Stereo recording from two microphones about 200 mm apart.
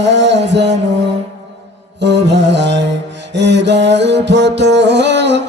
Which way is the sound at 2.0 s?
60° right (ahead or behind).